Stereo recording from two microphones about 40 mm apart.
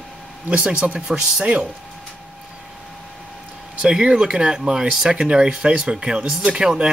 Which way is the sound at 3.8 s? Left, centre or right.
Centre.